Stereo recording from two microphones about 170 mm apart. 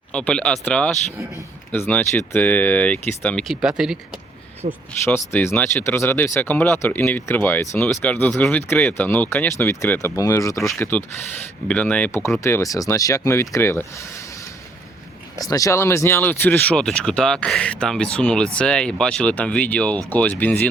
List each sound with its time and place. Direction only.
0.1 s speech: 5° left (ahead or behind)
4.6 s speech: 45° right (ahead or behind)
5.0 s speech: 15° left (ahead or behind)
15.4 s speech: 20° left (ahead or behind)